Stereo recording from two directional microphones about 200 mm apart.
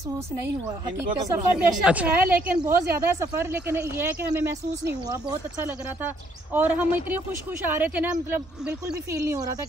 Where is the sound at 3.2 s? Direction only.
15° right (ahead or behind).